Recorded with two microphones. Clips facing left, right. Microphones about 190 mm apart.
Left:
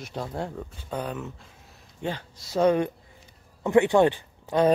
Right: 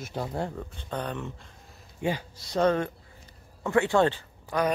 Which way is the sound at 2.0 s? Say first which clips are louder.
Right 2 dB; 10° right (ahead or behind).